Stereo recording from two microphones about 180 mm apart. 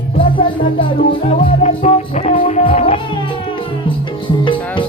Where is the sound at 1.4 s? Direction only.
40° left (ahead or behind).